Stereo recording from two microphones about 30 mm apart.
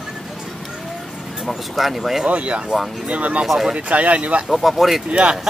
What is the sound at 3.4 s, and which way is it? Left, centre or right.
Speech, centre.